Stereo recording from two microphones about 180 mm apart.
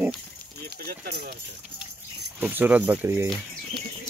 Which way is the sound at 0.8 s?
60° right (ahead or behind).